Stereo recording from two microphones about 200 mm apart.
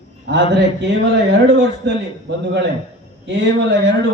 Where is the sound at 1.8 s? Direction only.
60° right (ahead or behind).